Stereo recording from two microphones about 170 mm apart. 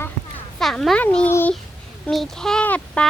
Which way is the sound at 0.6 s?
Centre (ahead or behind).